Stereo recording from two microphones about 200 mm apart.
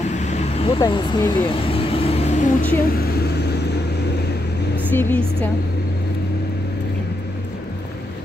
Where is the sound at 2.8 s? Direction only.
50° left (ahead or behind).